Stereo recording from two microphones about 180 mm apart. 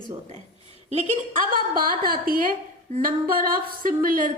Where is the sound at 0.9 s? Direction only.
45° right (ahead or behind).